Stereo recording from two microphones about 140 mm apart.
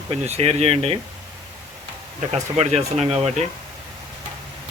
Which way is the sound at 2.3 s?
50° right (ahead or behind).